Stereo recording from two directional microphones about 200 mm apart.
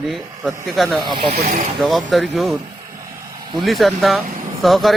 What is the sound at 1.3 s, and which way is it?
Speech, 40° right (ahead or behind).